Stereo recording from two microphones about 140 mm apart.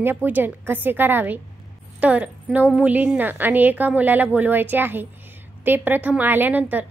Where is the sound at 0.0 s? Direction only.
15° right (ahead or behind).